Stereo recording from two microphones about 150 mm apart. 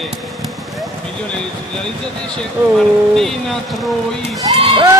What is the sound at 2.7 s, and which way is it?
Speech, centre (ahead or behind).